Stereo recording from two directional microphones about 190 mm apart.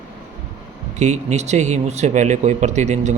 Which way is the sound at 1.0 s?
40° right (ahead or behind).